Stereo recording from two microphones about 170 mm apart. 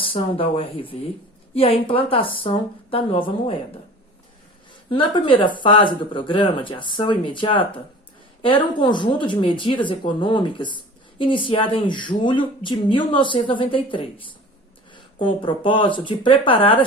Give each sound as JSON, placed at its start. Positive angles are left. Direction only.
{"t": 0.0, "sound": "speech", "side_deg": 30}
{"t": 4.9, "sound": "speech", "side_deg": 30}